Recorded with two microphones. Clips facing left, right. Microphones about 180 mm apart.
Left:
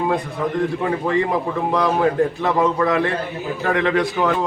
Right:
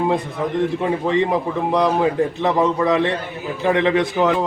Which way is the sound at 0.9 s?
20° right (ahead or behind).